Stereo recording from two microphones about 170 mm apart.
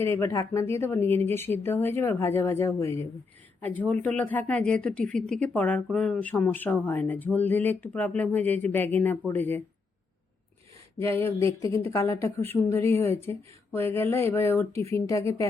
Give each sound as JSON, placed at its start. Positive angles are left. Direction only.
{"t": 0.0, "sound": "speech", "side_deg": 15}
{"t": 10.9, "sound": "speech", "side_deg": 15}